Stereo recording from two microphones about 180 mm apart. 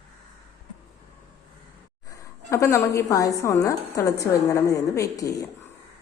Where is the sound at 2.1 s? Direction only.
20° left (ahead or behind).